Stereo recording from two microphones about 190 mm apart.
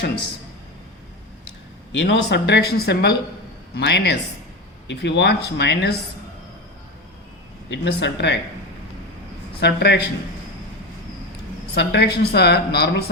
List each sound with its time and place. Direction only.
1.9 s a woman's voice: 75° left (ahead or behind)
7.7 s a woman's voice: 65° left (ahead or behind)
9.6 s a woman's voice: 60° left (ahead or behind)
11.7 s a woman's voice: 60° left (ahead or behind)